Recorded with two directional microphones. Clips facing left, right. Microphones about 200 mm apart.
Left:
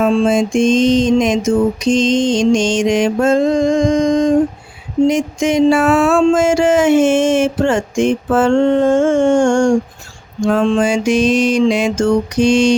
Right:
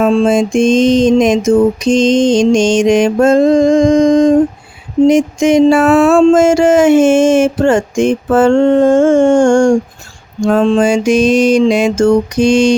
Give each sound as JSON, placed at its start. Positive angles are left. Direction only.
{"t": 0.0, "sound": "music", "side_deg": -45}